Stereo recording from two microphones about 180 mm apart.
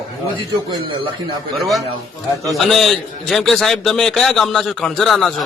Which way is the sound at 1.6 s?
Centre (ahead or behind).